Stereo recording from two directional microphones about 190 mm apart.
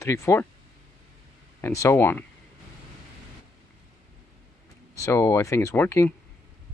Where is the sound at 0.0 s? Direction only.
15° left (ahead or behind).